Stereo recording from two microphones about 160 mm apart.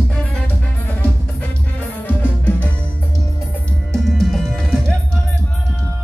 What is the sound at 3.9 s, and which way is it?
Music, centre (ahead or behind).